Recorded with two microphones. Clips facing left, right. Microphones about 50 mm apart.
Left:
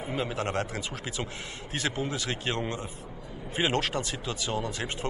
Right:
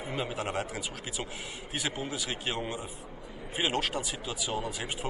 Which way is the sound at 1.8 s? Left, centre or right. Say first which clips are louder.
Left 4 dB; centre.